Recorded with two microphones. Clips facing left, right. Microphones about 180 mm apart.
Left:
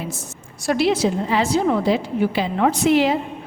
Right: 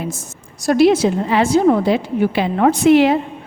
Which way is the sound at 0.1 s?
45° right (ahead or behind).